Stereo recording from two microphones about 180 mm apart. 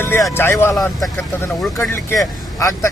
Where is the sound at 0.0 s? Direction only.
15° left (ahead or behind).